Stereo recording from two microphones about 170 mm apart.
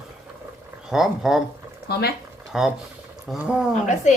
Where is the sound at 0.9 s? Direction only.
Centre (ahead or behind).